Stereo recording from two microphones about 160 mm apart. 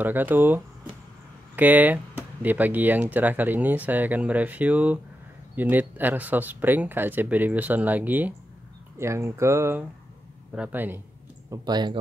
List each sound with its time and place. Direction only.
0.0 s speech: 10° right (ahead or behind)
11.5 s speech: 25° right (ahead or behind)